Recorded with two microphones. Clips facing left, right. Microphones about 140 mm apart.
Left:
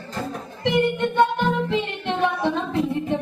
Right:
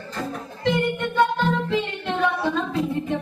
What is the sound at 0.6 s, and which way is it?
Music, 20° left (ahead or behind).